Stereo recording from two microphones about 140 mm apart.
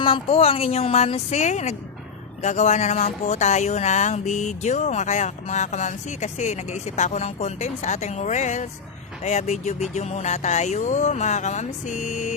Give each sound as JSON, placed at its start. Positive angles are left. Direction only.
{"t": 0.0, "sound": "speech", "side_deg": 40}